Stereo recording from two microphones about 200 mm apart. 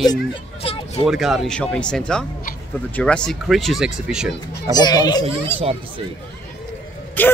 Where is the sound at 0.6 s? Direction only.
30° left (ahead or behind).